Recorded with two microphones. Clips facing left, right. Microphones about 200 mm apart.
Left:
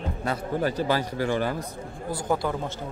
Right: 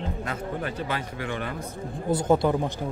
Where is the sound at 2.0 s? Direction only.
20° right (ahead or behind).